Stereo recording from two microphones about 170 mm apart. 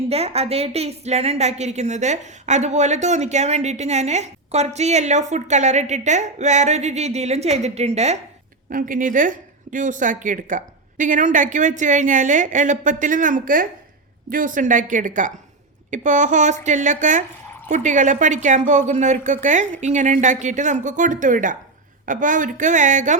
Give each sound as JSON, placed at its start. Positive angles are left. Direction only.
{"t": 0.1, "sound": "a woman's voice", "side_deg": -35}
{"t": 8.7, "sound": "a woman's voice", "side_deg": -50}